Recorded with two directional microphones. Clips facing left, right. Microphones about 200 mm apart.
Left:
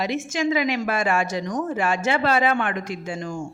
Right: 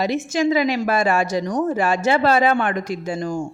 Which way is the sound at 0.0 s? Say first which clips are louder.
Right 4 dB; 35° right (ahead or behind).